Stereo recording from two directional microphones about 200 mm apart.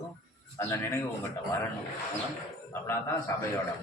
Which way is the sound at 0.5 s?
15° left (ahead or behind).